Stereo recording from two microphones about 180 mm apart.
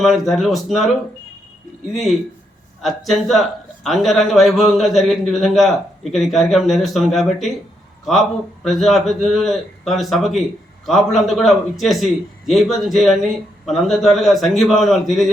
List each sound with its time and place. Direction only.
0.0 s a man's voice: centre (ahead or behind)
1.9 s a man's voice: centre (ahead or behind)
8.6 s a man's voice: centre (ahead or behind)